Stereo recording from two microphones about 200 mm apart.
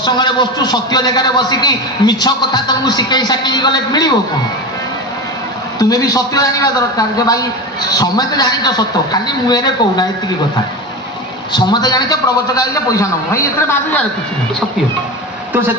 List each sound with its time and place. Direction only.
0.0 s a man's voice: 20° left (ahead or behind)
5.8 s a man's voice: 20° left (ahead or behind)
11.5 s a man's voice: 20° left (ahead or behind)